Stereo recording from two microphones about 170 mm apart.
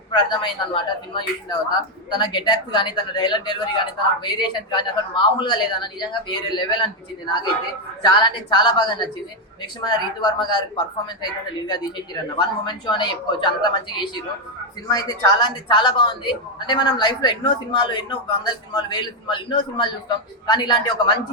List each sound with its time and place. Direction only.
0.1 s a woman's voice: 25° left (ahead or behind)
12.4 s a woman's voice: 25° left (ahead or behind)